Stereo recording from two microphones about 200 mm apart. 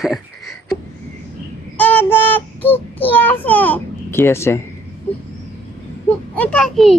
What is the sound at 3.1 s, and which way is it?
A child's voice, 10° left (ahead or behind).